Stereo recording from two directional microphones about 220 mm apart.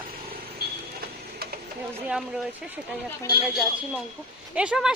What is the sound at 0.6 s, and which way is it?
Vehicle, 45° right (ahead or behind).